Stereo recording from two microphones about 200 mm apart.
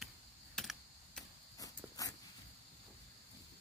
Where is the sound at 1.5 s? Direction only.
15° left (ahead or behind).